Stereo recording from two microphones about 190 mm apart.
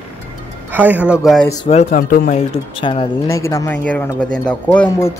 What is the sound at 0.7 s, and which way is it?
Speech, 10° right (ahead or behind).